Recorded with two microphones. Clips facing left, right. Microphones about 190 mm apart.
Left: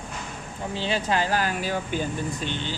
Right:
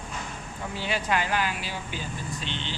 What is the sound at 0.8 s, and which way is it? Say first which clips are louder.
Speech: left 3 dB; 30° left (ahead or behind).